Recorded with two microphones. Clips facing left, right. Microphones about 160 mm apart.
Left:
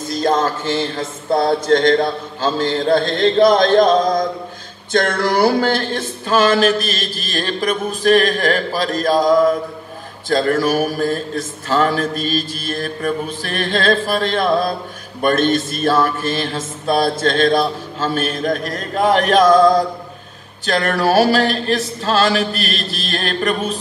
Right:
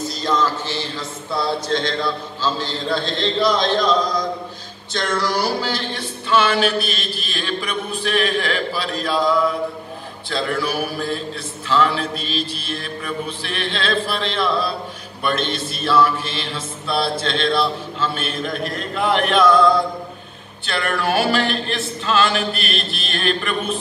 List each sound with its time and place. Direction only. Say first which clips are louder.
0.1 s music: left 6 dB; 50° left (ahead or behind)